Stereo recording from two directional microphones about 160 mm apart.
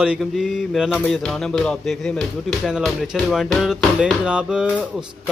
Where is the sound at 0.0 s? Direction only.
5° right (ahead or behind).